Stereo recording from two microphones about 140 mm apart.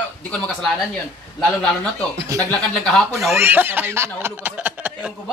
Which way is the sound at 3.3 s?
15° right (ahead or behind).